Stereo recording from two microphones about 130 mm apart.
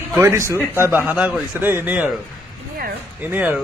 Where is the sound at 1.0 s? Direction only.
10° right (ahead or behind).